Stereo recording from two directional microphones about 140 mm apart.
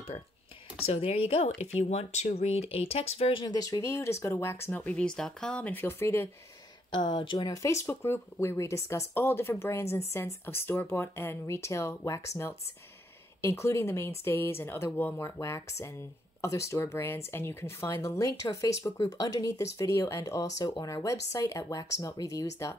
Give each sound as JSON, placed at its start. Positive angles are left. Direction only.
{"t": 0.8, "sound": "speech", "side_deg": 45}
{"t": 3.4, "sound": "speech", "side_deg": 25}
{"t": 6.9, "sound": "speech", "side_deg": 35}